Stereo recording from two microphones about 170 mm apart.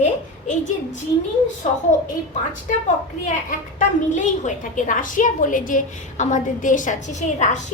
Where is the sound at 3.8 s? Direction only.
45° left (ahead or behind).